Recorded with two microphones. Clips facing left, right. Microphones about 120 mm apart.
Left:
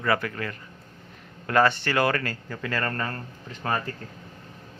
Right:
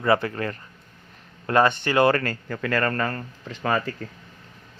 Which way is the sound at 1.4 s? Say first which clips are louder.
Right 2 dB; 20° right (ahead or behind).